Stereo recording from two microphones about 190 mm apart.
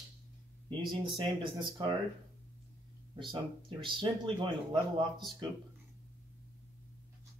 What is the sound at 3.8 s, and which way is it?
Speech, 25° right (ahead or behind).